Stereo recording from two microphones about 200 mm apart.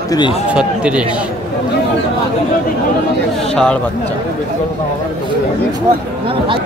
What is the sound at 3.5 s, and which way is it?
Speech, 5° left (ahead or behind).